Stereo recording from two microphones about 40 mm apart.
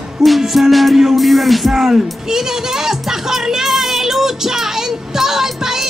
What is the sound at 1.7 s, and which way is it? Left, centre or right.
Speech, centre.